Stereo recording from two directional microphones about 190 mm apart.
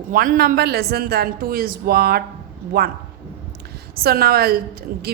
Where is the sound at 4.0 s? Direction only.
55° right (ahead or behind).